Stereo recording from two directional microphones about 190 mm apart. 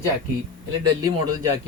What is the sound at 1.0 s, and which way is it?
Speech, 20° right (ahead or behind).